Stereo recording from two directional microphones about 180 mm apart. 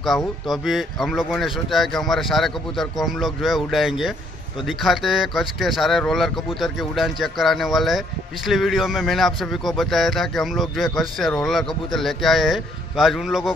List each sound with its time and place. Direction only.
0.0 s speech: centre (ahead or behind)